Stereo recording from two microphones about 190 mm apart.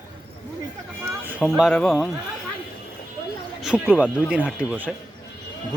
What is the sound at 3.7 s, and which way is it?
Speech, 5° right (ahead or behind).